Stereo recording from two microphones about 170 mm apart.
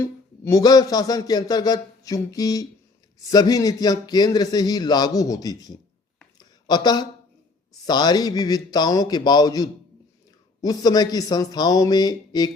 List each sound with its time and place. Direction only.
0.0 s speech: 15° left (ahead or behind)